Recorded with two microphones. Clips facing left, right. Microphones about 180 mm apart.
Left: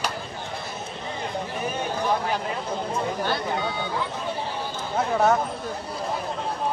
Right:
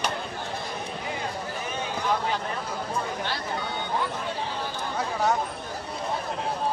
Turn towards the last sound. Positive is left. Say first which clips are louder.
# left 5 dB
turn(degrees=55)  # may be behind; listen again after turning